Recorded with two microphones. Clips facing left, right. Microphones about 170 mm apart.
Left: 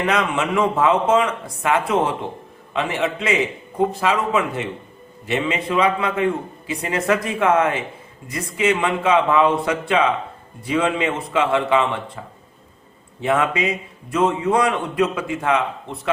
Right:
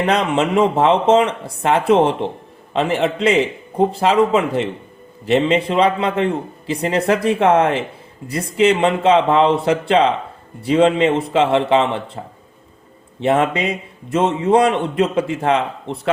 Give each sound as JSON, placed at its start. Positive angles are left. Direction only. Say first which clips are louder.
{"t": 0.0, "sound": "a man's voice", "louder": "right 4 dB", "side_deg": -30}
{"t": 13.2, "sound": "a man's voice", "louder": "right 3 dB", "side_deg": -30}